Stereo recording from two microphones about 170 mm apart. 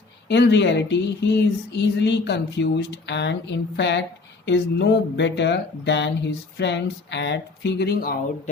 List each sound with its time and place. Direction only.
0.3 s speech: 90° left; by 8.2 s 65° left (ahead or behind)